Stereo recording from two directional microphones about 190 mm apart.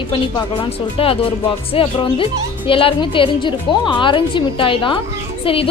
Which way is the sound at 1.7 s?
30° left (ahead or behind).